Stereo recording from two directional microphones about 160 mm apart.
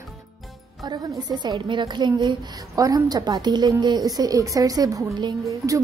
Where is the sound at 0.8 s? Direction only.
25° right (ahead or behind).